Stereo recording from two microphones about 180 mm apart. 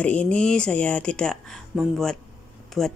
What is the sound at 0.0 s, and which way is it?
A woman's voice, 5° left (ahead or behind).